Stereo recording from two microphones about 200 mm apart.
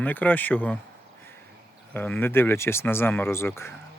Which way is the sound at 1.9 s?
10° left (ahead or behind).